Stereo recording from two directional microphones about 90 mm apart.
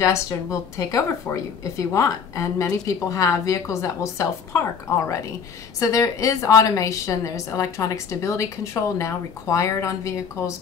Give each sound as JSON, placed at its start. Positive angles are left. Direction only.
{"t": 0.0, "sound": "a woman's voice", "side_deg": 35}